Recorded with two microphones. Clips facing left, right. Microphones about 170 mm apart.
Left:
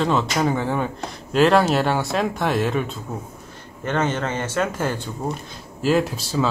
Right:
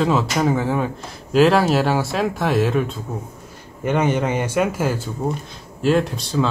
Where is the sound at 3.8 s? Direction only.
10° right (ahead or behind).